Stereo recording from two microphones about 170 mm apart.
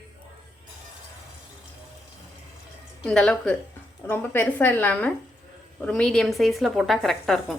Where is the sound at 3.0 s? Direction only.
5° left (ahead or behind).